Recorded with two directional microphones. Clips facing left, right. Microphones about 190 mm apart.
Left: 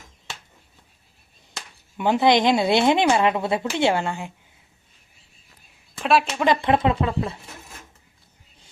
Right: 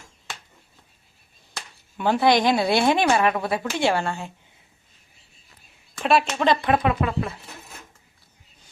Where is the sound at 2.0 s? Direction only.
20° left (ahead or behind).